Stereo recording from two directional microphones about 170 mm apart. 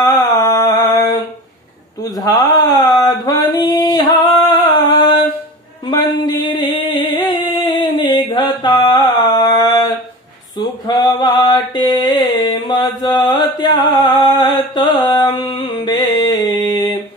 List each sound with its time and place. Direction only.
0.0 s a sound: 20° left (ahead or behind)
7.5 s music: 25° left (ahead or behind)
10.9 s mantra: 25° left (ahead or behind)
12.6 s chant: 25° left (ahead or behind)
15.0 s music: 25° left (ahead or behind)